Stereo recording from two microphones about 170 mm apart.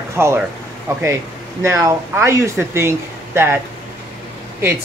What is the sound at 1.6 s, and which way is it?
Speech, 15° right (ahead or behind).